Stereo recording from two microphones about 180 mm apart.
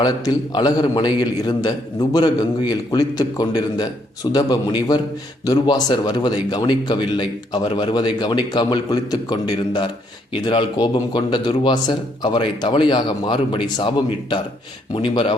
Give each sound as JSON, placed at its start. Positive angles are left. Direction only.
{"t": 0.0, "sound": "a man's voice", "side_deg": 25}